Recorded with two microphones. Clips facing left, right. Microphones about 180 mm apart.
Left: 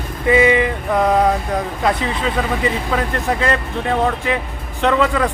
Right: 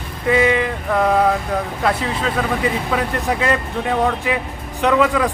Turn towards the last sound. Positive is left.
turn(degrees=-5)  # may be behind; listen again after turning